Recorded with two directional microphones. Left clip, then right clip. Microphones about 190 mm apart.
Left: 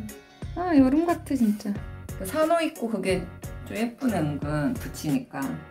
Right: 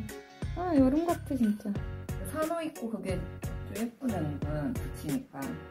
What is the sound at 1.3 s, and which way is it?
Music, 15° right (ahead or behind).